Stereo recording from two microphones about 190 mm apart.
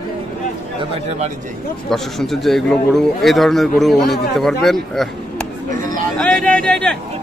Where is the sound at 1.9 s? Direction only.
Centre (ahead or behind).